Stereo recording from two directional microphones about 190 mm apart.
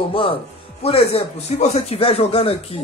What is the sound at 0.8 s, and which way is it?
Speech, 30° left (ahead or behind).